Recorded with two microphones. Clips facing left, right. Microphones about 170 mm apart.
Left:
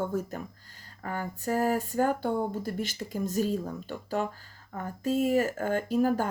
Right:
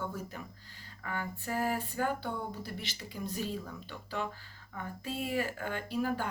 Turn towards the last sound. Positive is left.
turn(degrees=45)  # may be behind; listen again after turning